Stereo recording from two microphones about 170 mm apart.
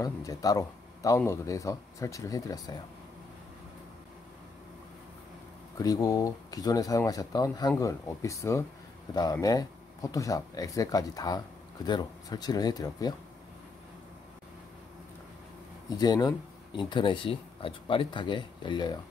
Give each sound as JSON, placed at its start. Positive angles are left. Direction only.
{"t": 0.0, "sound": "speech", "side_deg": 20}
{"t": 5.8, "sound": "speech", "side_deg": 20}
{"t": 16.0, "sound": "speech", "side_deg": 25}